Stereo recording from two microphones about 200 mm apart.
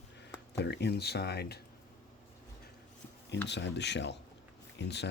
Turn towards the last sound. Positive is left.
turn(degrees=60)  # may be behind; listen again after turning